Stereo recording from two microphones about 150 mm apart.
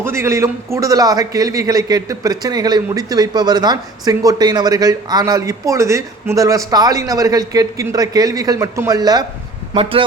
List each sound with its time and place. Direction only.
0.0 s a man's voice: 15° right (ahead or behind)